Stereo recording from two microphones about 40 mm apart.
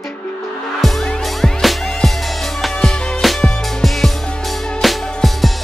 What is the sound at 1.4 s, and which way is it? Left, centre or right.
Music, centre.